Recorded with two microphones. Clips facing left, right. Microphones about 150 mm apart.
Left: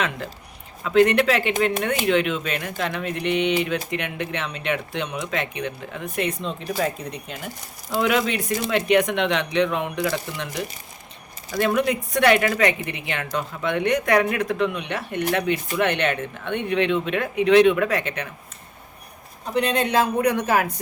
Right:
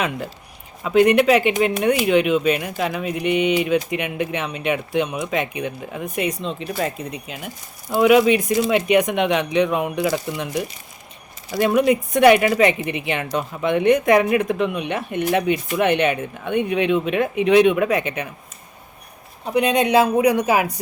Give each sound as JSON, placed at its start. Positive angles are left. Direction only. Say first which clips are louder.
{"t": 0.9, "sound": "speech", "louder": "right 3 dB", "side_deg": -15}
{"t": 6.4, "sound": "speech", "louder": "right 1 dB", "side_deg": 0}
{"t": 11.5, "sound": "speech", "louder": "right 4 dB", "side_deg": -20}
{"t": 19.5, "sound": "speech", "louder": "right 4 dB", "side_deg": -15}